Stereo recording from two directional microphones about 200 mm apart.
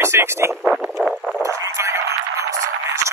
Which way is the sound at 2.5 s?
15° right (ahead or behind).